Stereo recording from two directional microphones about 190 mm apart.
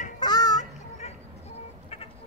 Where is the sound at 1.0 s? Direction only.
35° left (ahead or behind).